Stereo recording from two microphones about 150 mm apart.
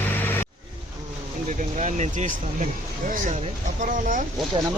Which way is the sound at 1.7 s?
50° right (ahead or behind).